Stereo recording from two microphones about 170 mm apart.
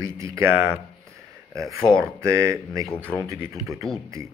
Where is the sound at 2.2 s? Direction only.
15° right (ahead or behind).